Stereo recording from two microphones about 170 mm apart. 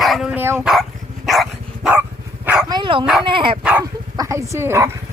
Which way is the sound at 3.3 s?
30° right (ahead or behind).